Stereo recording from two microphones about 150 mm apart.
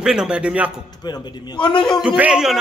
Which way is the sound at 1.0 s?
30° left (ahead or behind).